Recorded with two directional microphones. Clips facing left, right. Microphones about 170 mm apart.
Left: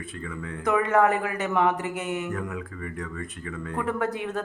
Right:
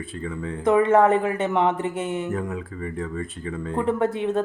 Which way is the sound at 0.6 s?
25° right (ahead or behind).